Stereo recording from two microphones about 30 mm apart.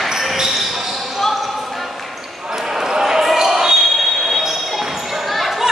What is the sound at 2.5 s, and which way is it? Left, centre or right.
Basketball bounce, centre.